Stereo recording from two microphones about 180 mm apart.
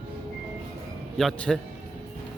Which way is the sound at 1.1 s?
Centre (ahead or behind).